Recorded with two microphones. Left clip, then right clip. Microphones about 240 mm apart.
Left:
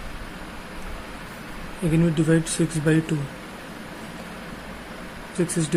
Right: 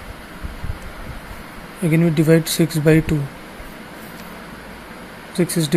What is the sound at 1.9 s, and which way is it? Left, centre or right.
Speech, right.